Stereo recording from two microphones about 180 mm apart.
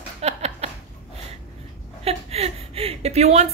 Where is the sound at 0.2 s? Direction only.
35° right (ahead or behind).